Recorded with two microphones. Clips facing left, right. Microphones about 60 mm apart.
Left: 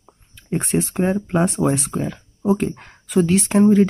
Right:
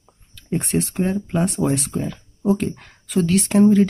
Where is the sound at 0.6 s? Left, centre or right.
Centre.